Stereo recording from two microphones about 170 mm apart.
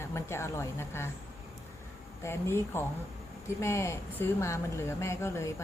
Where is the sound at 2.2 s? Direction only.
15° left (ahead or behind).